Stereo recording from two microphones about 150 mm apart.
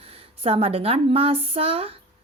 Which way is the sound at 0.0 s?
40° right (ahead or behind).